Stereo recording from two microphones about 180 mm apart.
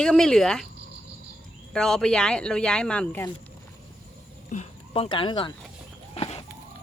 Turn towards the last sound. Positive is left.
turn(degrees=35)  # may be behind; listen again after turning